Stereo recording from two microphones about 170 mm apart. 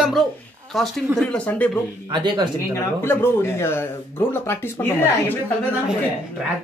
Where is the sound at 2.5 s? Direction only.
15° left (ahead or behind).